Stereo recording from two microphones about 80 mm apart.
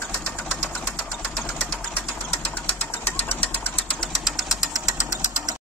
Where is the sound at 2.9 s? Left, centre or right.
Left.